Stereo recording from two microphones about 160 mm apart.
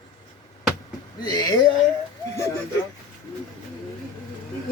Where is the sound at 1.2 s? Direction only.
25° left (ahead or behind).